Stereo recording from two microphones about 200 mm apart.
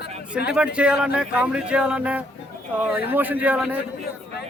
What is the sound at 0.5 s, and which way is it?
A man's voice, 5° right (ahead or behind).